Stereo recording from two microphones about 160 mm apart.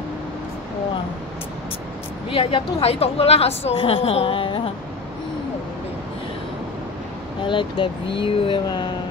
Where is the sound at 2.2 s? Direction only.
35° left (ahead or behind).